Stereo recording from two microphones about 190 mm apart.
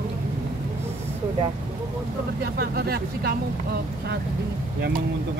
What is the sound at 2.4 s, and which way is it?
Speech, 55° right (ahead or behind).